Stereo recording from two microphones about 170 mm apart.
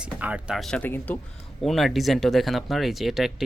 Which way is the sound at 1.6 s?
Centre (ahead or behind).